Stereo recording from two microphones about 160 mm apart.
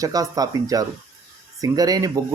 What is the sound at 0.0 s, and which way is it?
Speech, 20° right (ahead or behind).